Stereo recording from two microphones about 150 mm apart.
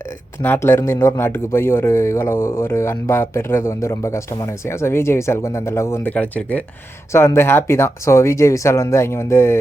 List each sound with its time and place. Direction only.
0.4 s speech: 15° left (ahead or behind)